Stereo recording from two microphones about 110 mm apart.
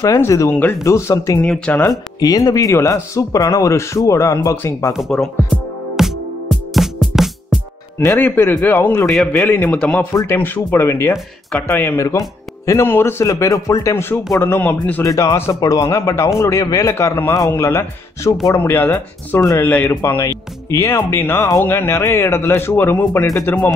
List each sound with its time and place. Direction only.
0.0 s speech: 30° left (ahead or behind)
1.4 s speech: 10° left (ahead or behind)
1.8 s speech: 35° left (ahead or behind)
4.9 s music: centre (ahead or behind)
8.0 s speech: 25° left (ahead or behind)
9.1 s a man's voice: 5° left (ahead or behind)
10.1 s speech: 20° left (ahead or behind)
15.0 s speech: 35° left (ahead or behind); by 23.7 s 20° left (ahead or behind)